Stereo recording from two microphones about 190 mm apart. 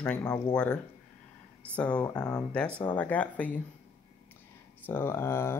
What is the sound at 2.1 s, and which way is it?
Speech, 20° left (ahead or behind).